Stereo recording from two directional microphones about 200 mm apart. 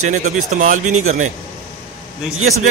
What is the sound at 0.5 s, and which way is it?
Speech, 40° right (ahead or behind).